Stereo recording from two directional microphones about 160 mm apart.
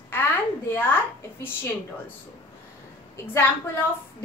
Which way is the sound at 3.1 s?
15° left (ahead or behind).